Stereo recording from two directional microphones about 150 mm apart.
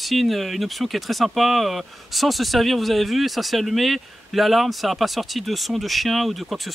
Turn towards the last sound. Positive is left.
turn(degrees=0)  # may be behind; listen again after turning